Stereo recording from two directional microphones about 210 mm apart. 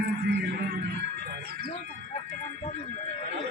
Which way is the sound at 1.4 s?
45° right (ahead or behind).